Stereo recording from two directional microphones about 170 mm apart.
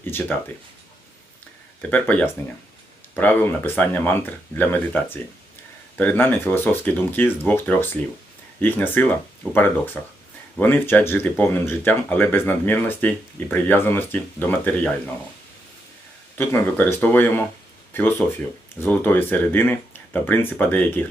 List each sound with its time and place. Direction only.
0.0 s speech: 10° left (ahead or behind)
1.8 s speech: 10° left (ahead or behind)
16.4 s speech: 15° left (ahead or behind)
18.8 s speech: 10° left (ahead or behind)